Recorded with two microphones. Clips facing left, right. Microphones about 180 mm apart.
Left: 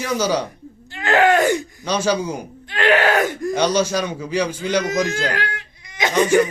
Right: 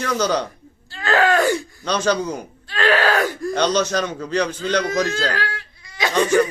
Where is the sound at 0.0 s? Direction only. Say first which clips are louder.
Even; 10° left (ahead or behind).